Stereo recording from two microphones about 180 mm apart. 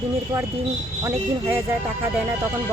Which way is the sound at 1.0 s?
10° right (ahead or behind).